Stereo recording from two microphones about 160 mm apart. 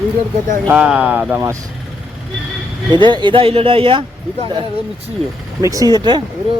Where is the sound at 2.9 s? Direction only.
30° right (ahead or behind).